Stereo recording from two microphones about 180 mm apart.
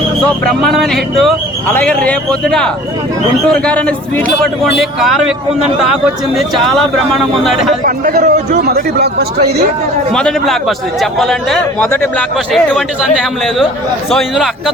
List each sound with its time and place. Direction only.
0.4 s a man's voice: centre (ahead or behind)
6.3 s a man's voice: centre (ahead or behind)
7.9 s a man's voice: 50° right (ahead or behind)
10.1 s a man's voice: 5° left (ahead or behind)